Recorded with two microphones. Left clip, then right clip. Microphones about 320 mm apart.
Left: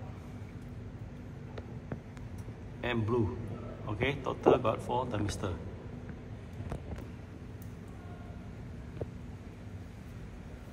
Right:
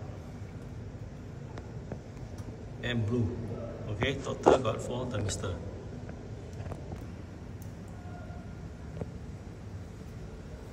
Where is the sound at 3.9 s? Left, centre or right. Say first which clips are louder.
Even; centre.